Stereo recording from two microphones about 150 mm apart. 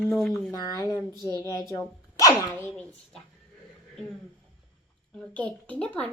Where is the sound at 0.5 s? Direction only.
25° left (ahead or behind).